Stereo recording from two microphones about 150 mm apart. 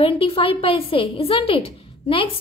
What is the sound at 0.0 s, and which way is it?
A woman's voice, 40° left (ahead or behind).